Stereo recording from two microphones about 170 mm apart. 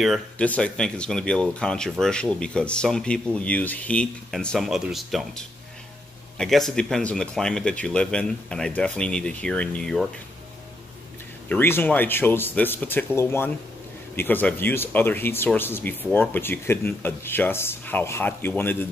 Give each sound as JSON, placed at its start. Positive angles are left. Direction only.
{"t": 0.0, "sound": "speech", "side_deg": 5}
{"t": 11.4, "sound": "speech", "side_deg": 10}